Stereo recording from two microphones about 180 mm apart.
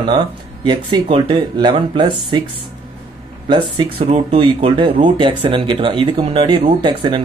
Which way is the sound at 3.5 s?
30° right (ahead or behind).